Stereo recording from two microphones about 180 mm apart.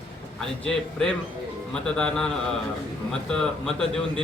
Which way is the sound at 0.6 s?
5° left (ahead or behind).